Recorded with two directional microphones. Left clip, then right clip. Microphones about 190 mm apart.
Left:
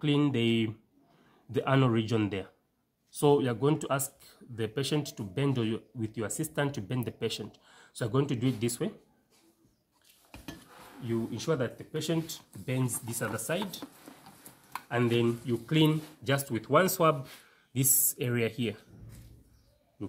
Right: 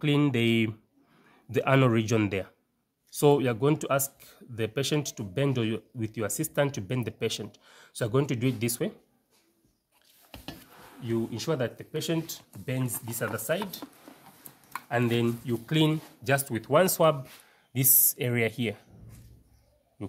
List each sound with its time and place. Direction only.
0.0 s speech: 45° right (ahead or behind)
11.1 s speech: 45° right (ahead or behind); by 13.8 s 20° right (ahead or behind)
14.9 s speech: 35° right (ahead or behind)